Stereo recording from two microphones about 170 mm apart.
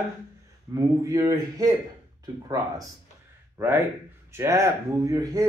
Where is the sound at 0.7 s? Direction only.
20° right (ahead or behind).